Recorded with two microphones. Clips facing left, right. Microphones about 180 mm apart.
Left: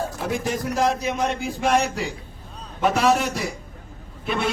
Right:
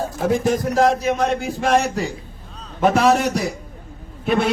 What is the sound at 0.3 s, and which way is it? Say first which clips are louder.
Speech: right 8 dB; 45° right (ahead or behind).